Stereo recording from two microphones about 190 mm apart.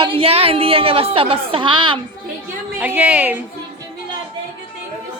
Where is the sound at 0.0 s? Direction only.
30° right (ahead or behind).